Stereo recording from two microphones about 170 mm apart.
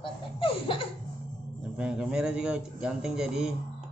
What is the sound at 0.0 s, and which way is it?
Baby laughter, 30° left (ahead or behind).